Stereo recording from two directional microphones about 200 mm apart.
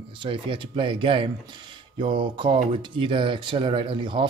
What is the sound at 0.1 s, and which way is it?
Speech, 25° right (ahead or behind).